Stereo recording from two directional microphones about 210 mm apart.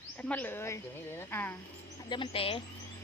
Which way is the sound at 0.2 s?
5° left (ahead or behind).